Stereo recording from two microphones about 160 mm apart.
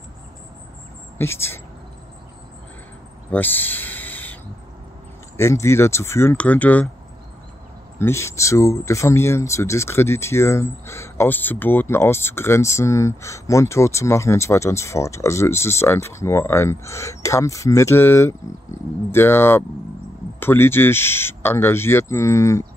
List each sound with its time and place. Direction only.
1.1 s speech: 15° left (ahead or behind)
3.3 s a sound: 10° left (ahead or behind)
5.4 s speech: 20° left (ahead or behind)
8.0 s speech: 15° left (ahead or behind)